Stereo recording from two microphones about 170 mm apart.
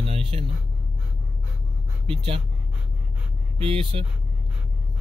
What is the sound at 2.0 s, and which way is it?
Speech, 35° right (ahead or behind).